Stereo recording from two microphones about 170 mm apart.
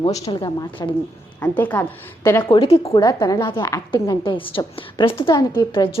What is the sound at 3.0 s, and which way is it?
Speech, 20° left (ahead or behind).